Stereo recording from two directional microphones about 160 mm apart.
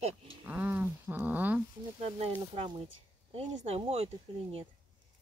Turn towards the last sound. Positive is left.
turn(degrees=-35)  # may be behind; listen again after turning